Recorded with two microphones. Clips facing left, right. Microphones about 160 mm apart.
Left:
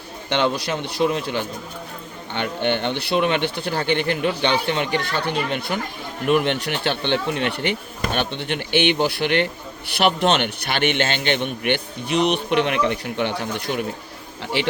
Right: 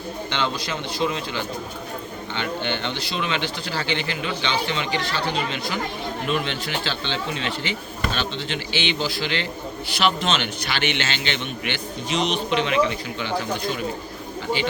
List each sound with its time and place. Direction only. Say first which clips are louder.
0.3 s a man's voice: left 7 dB; 60° left (ahead or behind)